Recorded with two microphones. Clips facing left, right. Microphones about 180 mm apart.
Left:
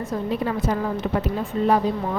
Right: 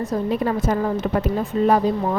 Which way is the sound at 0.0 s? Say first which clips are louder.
Right 3 dB; 40° right (ahead or behind).